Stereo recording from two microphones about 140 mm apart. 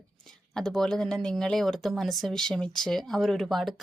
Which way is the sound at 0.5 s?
5° left (ahead or behind).